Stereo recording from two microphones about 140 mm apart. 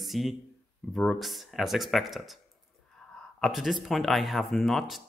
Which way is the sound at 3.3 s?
Centre (ahead or behind).